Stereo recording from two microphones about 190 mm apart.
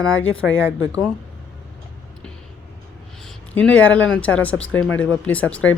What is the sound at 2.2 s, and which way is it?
Vehicle, 5° left (ahead or behind).